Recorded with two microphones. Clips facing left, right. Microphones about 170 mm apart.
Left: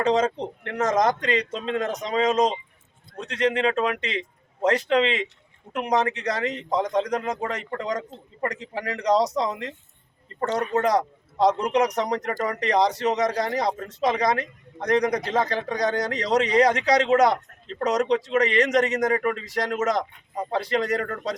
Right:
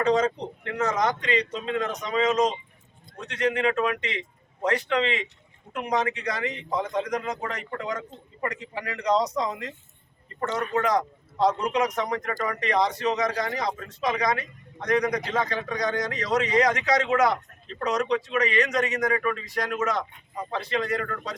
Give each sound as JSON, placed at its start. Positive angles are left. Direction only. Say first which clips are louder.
{"t": 0.0, "sound": "speech", "louder": "left 1 dB", "side_deg": 25}
{"t": 10.8, "sound": "speech", "louder": "left 2 dB", "side_deg": 35}